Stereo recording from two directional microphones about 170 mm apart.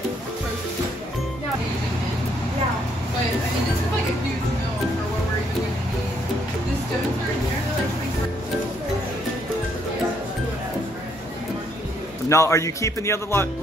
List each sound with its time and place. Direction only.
12.3 s a man's voice: 15° left (ahead or behind)